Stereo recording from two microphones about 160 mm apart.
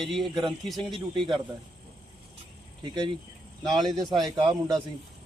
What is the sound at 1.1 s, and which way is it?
Speech, 30° right (ahead or behind).